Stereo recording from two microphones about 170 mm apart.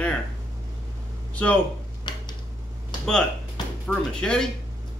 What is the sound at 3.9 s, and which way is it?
Speech, 5° left (ahead or behind).